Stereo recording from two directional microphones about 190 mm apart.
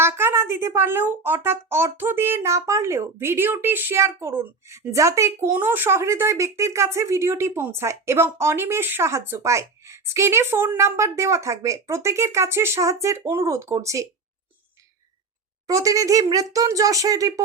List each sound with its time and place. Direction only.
0.0 s speech: 10° right (ahead or behind)
15.6 s speech: 15° right (ahead or behind)